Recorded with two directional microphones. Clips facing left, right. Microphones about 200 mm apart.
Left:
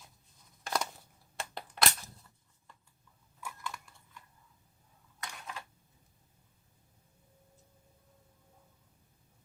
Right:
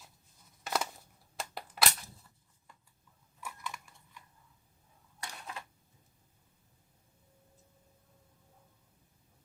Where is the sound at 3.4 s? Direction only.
Centre (ahead or behind).